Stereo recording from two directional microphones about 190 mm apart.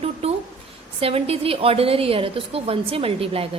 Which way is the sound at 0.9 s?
30° right (ahead or behind).